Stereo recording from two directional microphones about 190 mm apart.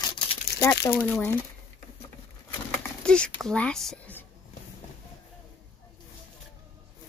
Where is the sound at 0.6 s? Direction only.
15° left (ahead or behind).